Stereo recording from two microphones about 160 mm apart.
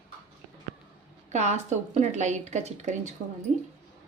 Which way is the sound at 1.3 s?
45° right (ahead or behind).